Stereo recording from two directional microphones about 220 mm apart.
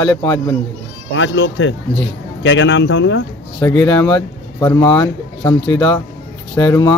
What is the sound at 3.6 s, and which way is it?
A man's voice, 10° left (ahead or behind).